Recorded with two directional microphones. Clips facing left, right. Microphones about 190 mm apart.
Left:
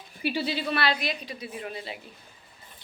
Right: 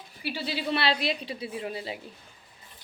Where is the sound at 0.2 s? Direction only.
20° left (ahead or behind).